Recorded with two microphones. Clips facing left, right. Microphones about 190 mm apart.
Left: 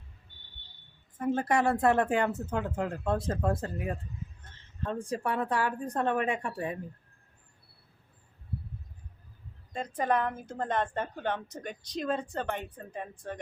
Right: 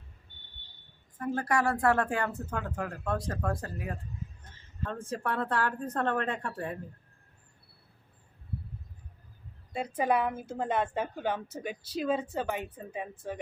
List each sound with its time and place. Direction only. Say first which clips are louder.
1.2 s speech: left 2 dB; 20° left (ahead or behind)
9.7 s a woman's voice: right 1 dB; 10° right (ahead or behind)